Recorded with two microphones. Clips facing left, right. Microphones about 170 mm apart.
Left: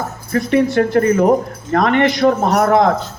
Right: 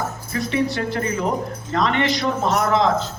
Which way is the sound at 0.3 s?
50° left (ahead or behind).